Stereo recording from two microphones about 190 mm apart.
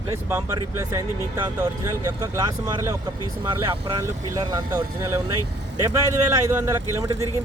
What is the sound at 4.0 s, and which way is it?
Speech, 20° right (ahead or behind).